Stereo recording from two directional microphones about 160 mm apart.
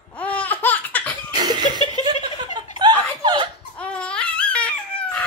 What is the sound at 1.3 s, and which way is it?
Chuckle, 25° right (ahead or behind).